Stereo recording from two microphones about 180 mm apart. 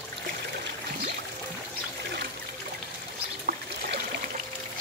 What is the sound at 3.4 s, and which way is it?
Trickle, 55° right (ahead or behind).